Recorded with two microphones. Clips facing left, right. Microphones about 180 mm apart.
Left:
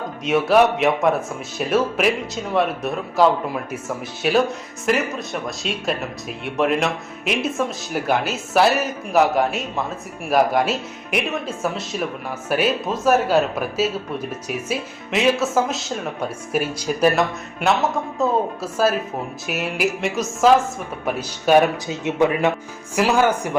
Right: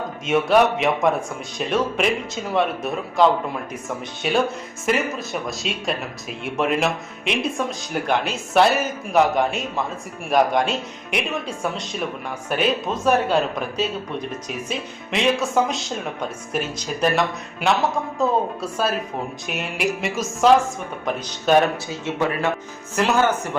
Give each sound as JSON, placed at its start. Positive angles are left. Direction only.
{"t": 0.3, "sound": "speech", "side_deg": 0}